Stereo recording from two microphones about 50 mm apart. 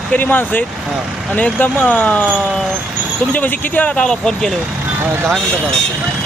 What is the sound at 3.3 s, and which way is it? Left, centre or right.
Speech, left.